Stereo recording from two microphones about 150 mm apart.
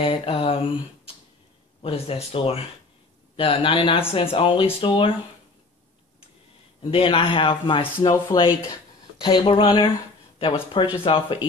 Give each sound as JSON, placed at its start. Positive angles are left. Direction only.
{"t": 0.0, "sound": "a man's voice", "side_deg": 35}
{"t": 6.8, "sound": "a man's voice", "side_deg": 35}